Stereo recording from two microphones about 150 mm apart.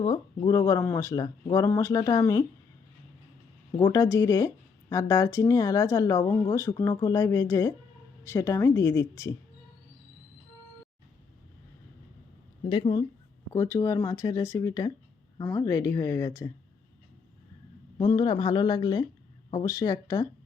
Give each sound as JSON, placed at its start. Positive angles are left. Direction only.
{"t": 0.1, "sound": "speech", "side_deg": 25}
{"t": 3.8, "sound": "speech", "side_deg": 25}
{"t": 12.6, "sound": "speech", "side_deg": 35}
{"t": 13.5, "sound": "speech", "side_deg": 20}
{"t": 17.9, "sound": "speech", "side_deg": 25}